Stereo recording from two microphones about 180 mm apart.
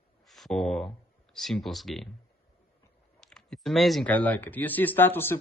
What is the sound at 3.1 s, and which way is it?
Speech, 5° left (ahead or behind).